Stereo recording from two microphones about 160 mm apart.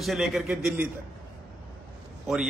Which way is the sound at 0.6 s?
15° right (ahead or behind).